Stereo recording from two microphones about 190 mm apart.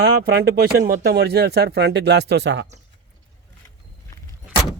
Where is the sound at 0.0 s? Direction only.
55° right (ahead or behind).